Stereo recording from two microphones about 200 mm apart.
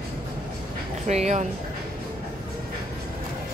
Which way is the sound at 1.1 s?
35° right (ahead or behind).